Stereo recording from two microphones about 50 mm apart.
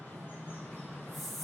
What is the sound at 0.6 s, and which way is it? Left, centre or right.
Train, left.